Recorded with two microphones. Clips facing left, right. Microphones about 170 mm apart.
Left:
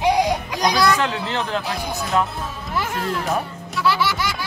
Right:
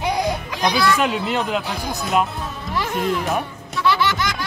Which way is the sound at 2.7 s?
Centre (ahead or behind).